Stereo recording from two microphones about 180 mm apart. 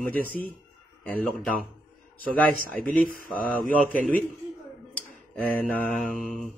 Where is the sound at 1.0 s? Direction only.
5° left (ahead or behind).